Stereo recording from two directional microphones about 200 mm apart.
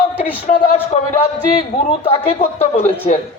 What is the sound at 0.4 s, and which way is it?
Speech, 45° left (ahead or behind).